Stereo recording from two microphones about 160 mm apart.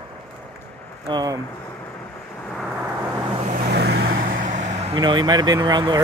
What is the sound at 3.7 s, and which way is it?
Vehicle, 90° right.